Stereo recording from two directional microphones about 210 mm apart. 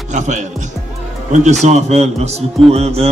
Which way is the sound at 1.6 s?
30° right (ahead or behind).